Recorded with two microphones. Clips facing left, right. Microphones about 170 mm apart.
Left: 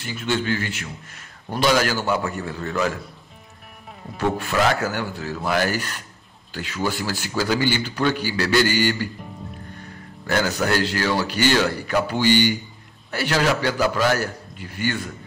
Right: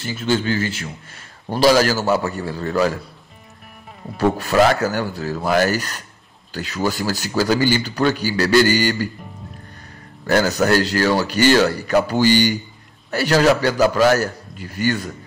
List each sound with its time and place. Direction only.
0.0 s a man's voice: 30° right (ahead or behind)
4.2 s a man's voice: 40° right (ahead or behind)
10.2 s a man's voice: 40° right (ahead or behind)